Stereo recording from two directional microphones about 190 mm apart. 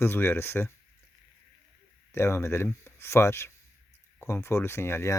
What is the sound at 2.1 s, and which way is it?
Speech, 15° left (ahead or behind).